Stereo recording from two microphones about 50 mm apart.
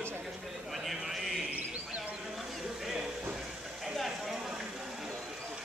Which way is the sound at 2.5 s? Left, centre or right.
Centre.